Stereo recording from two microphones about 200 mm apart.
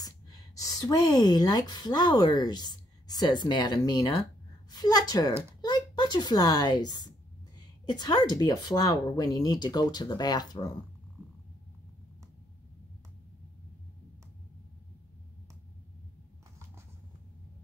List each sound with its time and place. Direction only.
0.6 s a woman's voice: 20° left (ahead or behind)